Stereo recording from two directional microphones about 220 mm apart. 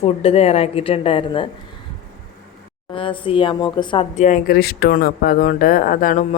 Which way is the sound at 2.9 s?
25° left (ahead or behind).